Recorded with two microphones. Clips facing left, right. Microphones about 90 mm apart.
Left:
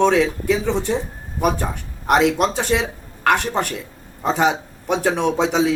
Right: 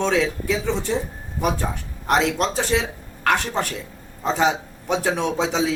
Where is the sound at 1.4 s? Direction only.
55° left (ahead or behind).